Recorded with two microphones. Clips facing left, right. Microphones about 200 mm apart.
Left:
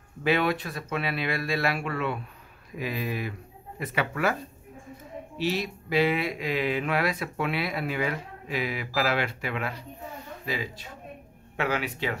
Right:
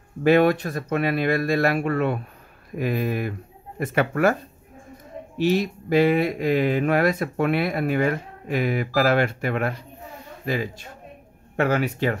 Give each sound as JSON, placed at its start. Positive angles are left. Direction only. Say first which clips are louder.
{"t": 0.2, "sound": "speech", "louder": "right 8 dB", "side_deg": -45}
{"t": 5.4, "sound": "speech", "louder": "right 8 dB", "side_deg": -50}